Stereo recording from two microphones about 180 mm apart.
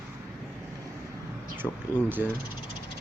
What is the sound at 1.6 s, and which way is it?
Speech, 5° left (ahead or behind).